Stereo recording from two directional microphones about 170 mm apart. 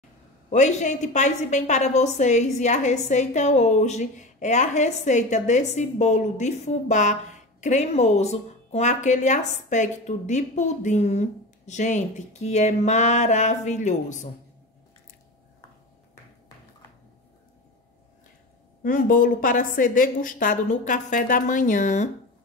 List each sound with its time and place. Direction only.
0.5 s a woman's voice: 45° left (ahead or behind)
18.8 s a woman's voice: 50° left (ahead or behind)